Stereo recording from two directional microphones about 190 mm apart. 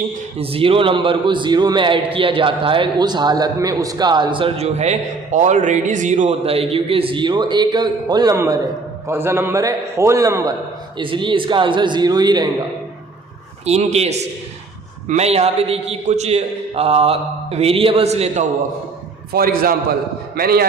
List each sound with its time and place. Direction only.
0.3 s a man's voice: 30° right (ahead or behind)
13.7 s a man's voice: 35° right (ahead or behind)
19.3 s a man's voice: 50° right (ahead or behind)